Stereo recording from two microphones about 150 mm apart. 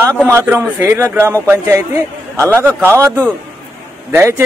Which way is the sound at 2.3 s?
20° right (ahead or behind).